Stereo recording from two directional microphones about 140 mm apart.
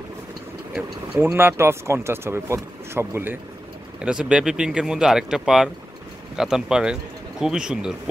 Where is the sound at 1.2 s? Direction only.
15° right (ahead or behind).